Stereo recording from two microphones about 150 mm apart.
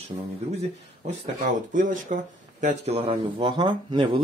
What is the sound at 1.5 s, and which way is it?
Speech, 60° right (ahead or behind).